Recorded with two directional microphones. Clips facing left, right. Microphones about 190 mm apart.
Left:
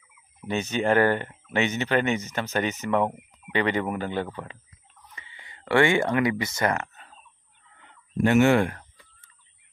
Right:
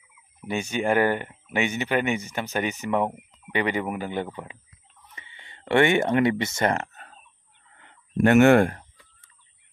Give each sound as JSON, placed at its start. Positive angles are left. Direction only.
{"t": 0.5, "sound": "speech", "side_deg": -10}
{"t": 8.2, "sound": "speech", "side_deg": -60}